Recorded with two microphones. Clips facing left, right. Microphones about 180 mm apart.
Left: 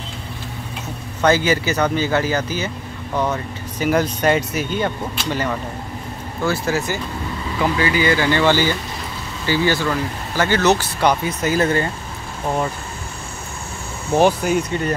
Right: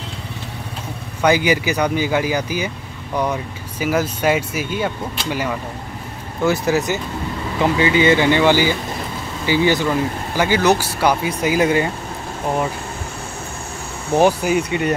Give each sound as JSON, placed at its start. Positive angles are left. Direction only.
{"t": 1.2, "sound": "speech", "side_deg": -15}
{"t": 6.4, "sound": "speech", "side_deg": -20}
{"t": 14.1, "sound": "speech", "side_deg": -10}